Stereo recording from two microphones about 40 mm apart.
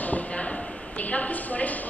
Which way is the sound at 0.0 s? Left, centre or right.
Left.